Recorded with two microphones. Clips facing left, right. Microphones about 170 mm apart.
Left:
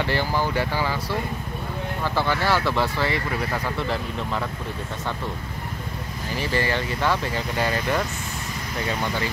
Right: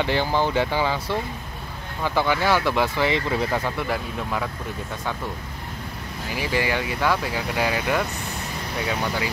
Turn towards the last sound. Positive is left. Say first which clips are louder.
# right 1 dB
turn(degrees=-10)  # may be behind; listen again after turning